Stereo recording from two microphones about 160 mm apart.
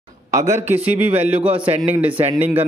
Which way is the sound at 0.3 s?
20° right (ahead or behind).